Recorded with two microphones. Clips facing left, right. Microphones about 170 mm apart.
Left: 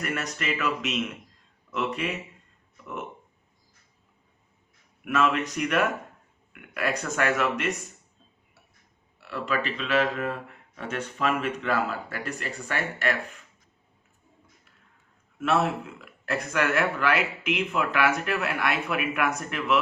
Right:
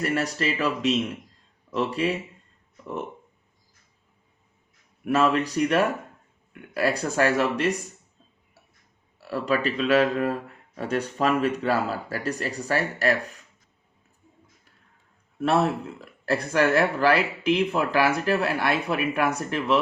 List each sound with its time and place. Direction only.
0.0 s speech: 30° right (ahead or behind)
5.0 s speech: 35° right (ahead or behind)
9.2 s speech: 40° right (ahead or behind)
15.4 s speech: 35° right (ahead or behind)